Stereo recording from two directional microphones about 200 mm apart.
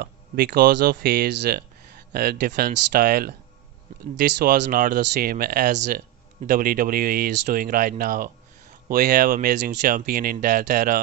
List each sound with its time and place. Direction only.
0.0 s speech: 50° right (ahead or behind)